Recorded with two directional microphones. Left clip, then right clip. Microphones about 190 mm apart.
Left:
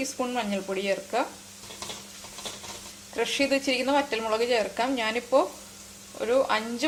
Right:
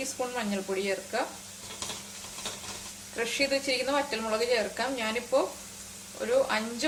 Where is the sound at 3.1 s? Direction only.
40° left (ahead or behind).